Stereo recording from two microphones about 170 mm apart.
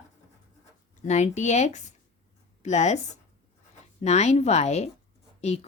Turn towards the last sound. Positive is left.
turn(degrees=40)  # may be behind; listen again after turning